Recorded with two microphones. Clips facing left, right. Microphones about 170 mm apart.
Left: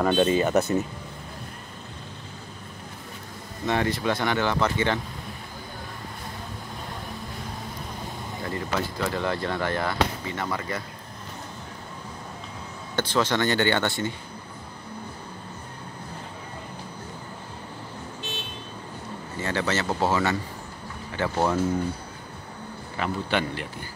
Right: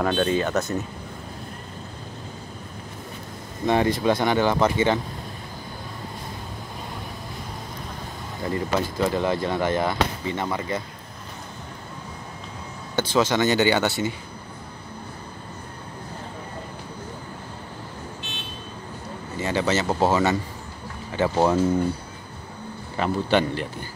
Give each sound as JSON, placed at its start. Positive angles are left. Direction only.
{"t": 0.0, "sound": "speech", "side_deg": 5}
{"t": 3.6, "sound": "speech", "side_deg": -20}
{"t": 8.7, "sound": "speech", "side_deg": -20}
{"t": 13.1, "sound": "speech", "side_deg": -15}
{"t": 19.4, "sound": "speech", "side_deg": -15}
{"t": 22.9, "sound": "a man's voice", "side_deg": -35}